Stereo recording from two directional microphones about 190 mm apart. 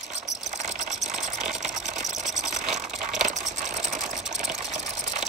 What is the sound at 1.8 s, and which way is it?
Sewing machine, 40° right (ahead or behind).